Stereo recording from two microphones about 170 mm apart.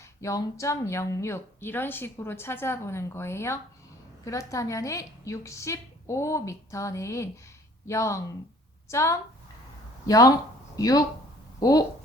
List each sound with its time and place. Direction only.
0.0 s speech: 20° left (ahead or behind)